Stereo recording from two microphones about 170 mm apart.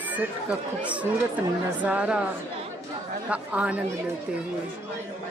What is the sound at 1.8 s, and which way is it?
Speech, 10° right (ahead or behind).